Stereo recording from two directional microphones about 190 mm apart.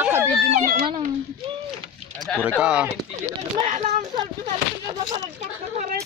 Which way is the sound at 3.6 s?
35° right (ahead or behind).